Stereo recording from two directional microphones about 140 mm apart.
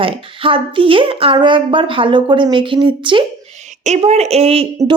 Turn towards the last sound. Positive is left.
turn(degrees=-45)  # may be behind; listen again after turning